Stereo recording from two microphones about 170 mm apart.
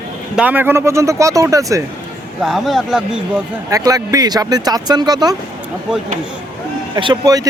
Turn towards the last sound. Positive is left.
turn(degrees=-20)  # may be behind; listen again after turning